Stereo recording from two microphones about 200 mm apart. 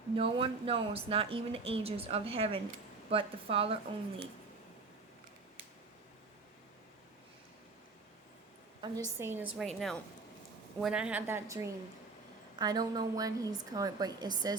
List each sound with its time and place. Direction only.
0.2 s a woman's voice: 25° right (ahead or behind)
8.8 s a woman's voice: 15° right (ahead or behind)